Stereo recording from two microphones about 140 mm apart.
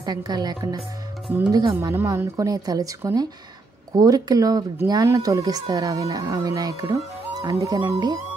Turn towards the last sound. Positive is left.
turn(degrees=-30)  # may be behind; listen again after turning